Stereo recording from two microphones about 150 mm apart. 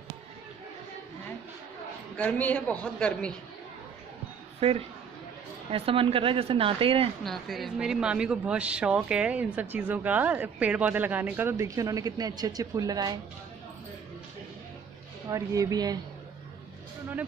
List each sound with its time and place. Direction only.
2.1 s a woman's voice: 10° left (ahead or behind)
4.6 s speech: 40° right (ahead or behind)
7.2 s a woman's voice: centre (ahead or behind); by 13.2 s 25° right (ahead or behind)
15.2 s speech: 25° right (ahead or behind)